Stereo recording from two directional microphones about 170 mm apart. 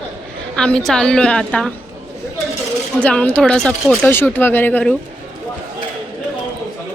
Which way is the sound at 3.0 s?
5° left (ahead or behind).